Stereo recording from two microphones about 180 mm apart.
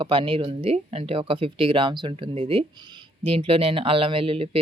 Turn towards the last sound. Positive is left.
turn(degrees=-30)  # may be behind; listen again after turning